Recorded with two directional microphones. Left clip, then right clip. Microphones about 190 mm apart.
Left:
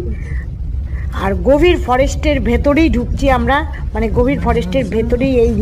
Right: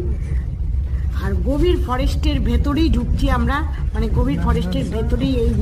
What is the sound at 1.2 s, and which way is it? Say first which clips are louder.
A woman's voice: left 10 dB; 25° left (ahead or behind).